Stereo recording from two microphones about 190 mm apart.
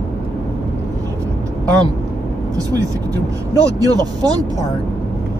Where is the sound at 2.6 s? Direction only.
20° right (ahead or behind).